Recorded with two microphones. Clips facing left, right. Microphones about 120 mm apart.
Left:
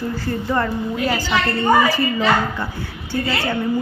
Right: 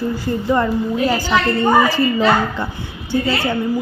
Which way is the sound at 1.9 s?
25° right (ahead or behind).